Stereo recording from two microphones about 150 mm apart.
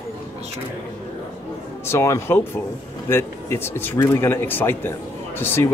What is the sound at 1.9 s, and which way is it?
Speech, 20° left (ahead or behind).